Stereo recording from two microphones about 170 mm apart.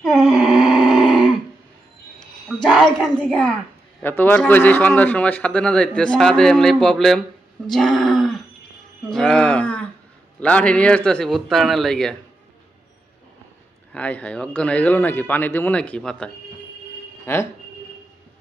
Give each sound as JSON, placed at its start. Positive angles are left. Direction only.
{"t": 0.0, "sound": "a sound", "side_deg": 0}
{"t": 2.8, "sound": "a woman's voice", "side_deg": 5}
{"t": 7.7, "sound": "wild animals", "side_deg": 0}
{"t": 9.1, "sound": "a woman's voice", "side_deg": 5}
{"t": 13.9, "sound": "a man's voice", "side_deg": 10}
{"t": 17.3, "sound": "a man's voice", "side_deg": 15}